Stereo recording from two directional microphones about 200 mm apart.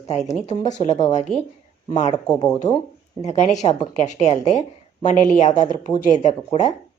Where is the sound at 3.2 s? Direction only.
35° left (ahead or behind).